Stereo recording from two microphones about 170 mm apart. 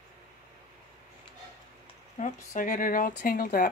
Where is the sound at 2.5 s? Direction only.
50° left (ahead or behind).